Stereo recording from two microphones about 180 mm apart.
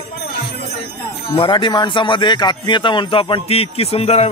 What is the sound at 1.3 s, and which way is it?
A man's voice, 30° left (ahead or behind).